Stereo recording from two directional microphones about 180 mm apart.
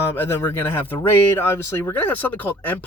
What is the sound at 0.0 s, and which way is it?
Speech, 10° left (ahead or behind).